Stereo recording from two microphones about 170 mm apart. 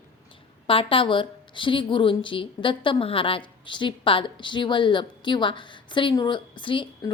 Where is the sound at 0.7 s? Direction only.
30° left (ahead or behind).